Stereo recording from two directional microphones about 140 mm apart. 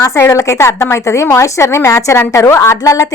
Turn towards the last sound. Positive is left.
turn(degrees=20)  # may be behind; listen again after turning